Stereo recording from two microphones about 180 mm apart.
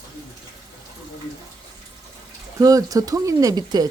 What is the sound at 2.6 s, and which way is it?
Speech, 20° right (ahead or behind).